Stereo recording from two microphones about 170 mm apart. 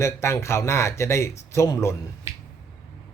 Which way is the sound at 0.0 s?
15° left (ahead or behind).